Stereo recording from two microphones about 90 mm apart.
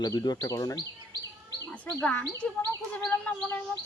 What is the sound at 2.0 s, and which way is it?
Speech, 15° left (ahead or behind).